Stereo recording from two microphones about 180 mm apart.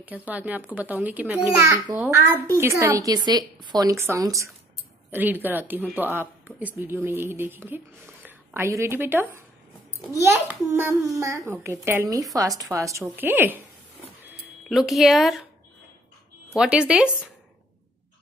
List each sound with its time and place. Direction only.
0.0 s a child's voice: 10° right (ahead or behind)
14.7 s speech: centre (ahead or behind)
16.5 s speech: 5° right (ahead or behind)